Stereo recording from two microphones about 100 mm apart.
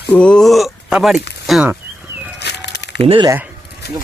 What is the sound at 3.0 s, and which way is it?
Speech, 70° right (ahead or behind).